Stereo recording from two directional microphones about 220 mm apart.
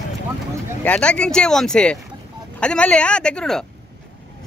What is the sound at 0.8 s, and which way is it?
Speech, 5° left (ahead or behind).